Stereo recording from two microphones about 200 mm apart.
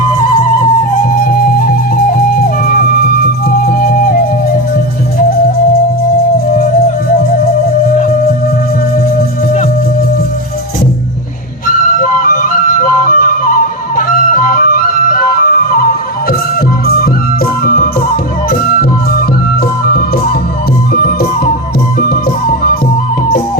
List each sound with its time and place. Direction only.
1.0 s music: 45° left (ahead or behind)
3.5 s music: 45° left (ahead or behind)
11.9 s flute: 40° left (ahead or behind)
16.8 s music: 45° left (ahead or behind)
19.8 s music: 45° left (ahead or behind)